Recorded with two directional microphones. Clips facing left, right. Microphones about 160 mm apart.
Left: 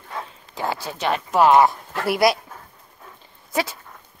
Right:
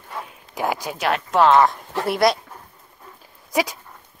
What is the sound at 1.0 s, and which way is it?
Speech, centre (ahead or behind).